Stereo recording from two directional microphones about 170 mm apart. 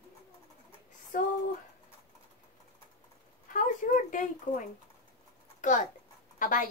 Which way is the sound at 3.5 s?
50° left (ahead or behind).